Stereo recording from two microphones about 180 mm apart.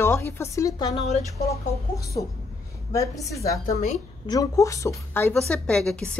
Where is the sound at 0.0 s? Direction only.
15° left (ahead or behind).